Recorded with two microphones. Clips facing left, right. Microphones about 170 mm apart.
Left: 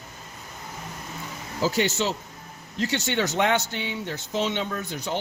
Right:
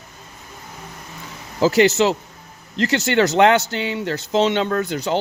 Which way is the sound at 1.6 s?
75° right (ahead or behind).